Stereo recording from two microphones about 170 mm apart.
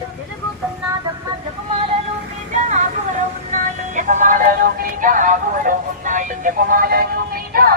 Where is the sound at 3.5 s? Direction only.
45° right (ahead or behind).